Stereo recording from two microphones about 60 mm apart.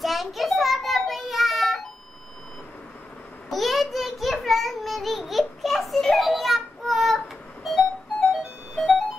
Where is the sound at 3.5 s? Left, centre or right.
Centre.